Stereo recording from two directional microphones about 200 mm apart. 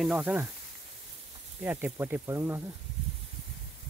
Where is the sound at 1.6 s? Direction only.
10° right (ahead or behind).